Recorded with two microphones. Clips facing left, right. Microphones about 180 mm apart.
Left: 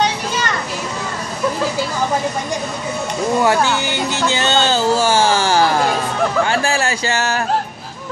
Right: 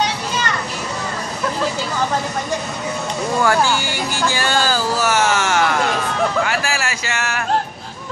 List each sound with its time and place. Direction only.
3.4 s speech: 20° left (ahead or behind)